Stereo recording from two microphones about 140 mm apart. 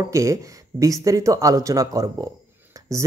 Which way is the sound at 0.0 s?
25° right (ahead or behind).